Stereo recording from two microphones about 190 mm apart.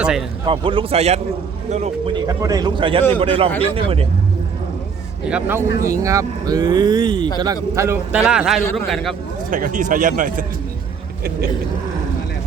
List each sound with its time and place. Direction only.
0.0 s speech: 5° right (ahead or behind)
0.4 s a man's voice: 25° right (ahead or behind)
2.1 s speech: 20° right (ahead or behind)
5.3 s a man's voice: 10° right (ahead or behind)
9.5 s speech: 45° right (ahead or behind)